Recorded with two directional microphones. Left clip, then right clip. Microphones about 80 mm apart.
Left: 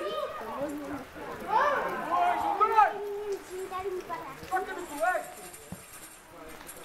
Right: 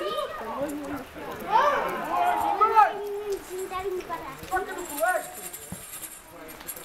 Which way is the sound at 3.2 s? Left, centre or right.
Right.